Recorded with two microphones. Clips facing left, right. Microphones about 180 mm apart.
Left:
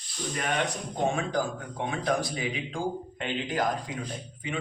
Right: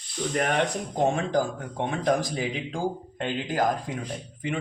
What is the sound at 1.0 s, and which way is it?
A man's voice, 45° right (ahead or behind).